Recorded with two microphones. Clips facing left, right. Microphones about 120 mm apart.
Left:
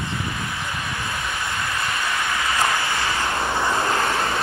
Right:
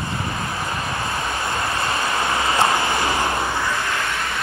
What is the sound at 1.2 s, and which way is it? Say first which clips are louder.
Vehicle: right 3 dB; 40° right (ahead or behind).